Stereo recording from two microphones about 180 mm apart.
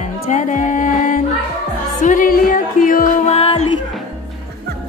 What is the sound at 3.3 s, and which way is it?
Music, 35° left (ahead or behind).